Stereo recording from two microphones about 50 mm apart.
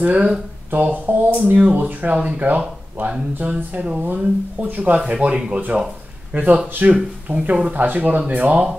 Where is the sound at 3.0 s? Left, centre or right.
Right.